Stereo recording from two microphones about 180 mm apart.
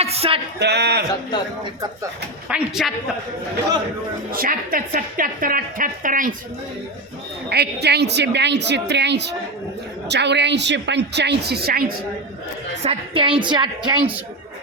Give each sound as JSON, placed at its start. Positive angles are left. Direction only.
{"t": 0.0, "sound": "a sound", "side_deg": -35}
{"t": 0.6, "sound": "a woman's voice", "side_deg": -70}
{"t": 2.5, "sound": "a woman's voice", "side_deg": 0}
{"t": 4.3, "sound": "a woman's voice", "side_deg": -55}
{"t": 7.5, "sound": "a woman's voice", "side_deg": -65}
{"t": 12.8, "sound": "a woman's voice", "side_deg": -30}